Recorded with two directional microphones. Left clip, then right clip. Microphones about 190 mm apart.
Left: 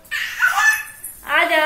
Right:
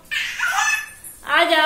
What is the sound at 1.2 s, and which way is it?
Speech, 15° right (ahead or behind).